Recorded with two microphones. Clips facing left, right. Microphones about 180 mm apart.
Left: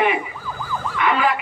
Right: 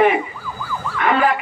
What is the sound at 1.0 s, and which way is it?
Ambulance, 45° right (ahead or behind).